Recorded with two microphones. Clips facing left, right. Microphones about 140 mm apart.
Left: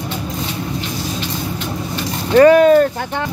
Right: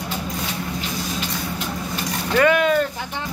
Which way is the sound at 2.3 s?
35° left (ahead or behind).